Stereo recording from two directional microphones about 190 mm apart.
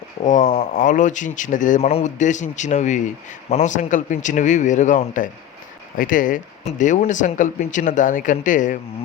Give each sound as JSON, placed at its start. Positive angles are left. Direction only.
{"t": 0.3, "sound": "speech", "side_deg": 40}